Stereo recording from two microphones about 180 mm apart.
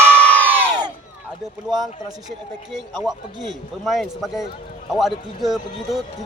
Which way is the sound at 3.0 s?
Centre (ahead or behind).